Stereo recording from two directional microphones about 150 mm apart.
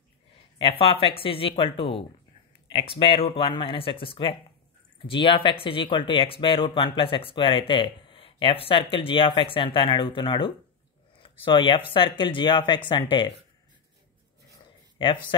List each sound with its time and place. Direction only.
0.6 s speech: 35° left (ahead or behind)
15.0 s speech: 35° left (ahead or behind)